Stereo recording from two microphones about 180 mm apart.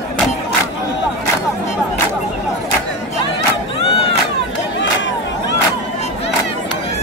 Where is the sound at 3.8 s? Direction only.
30° left (ahead or behind).